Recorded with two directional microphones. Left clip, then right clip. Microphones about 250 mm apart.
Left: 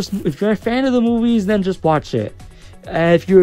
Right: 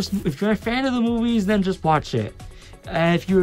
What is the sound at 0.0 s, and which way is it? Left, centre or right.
Speech, centre.